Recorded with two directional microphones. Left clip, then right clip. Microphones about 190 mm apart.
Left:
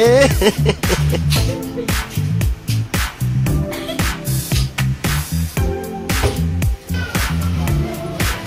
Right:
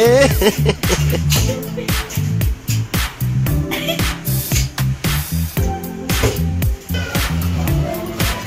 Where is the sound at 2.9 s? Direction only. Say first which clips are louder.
Left 1 dB; centre (ahead or behind).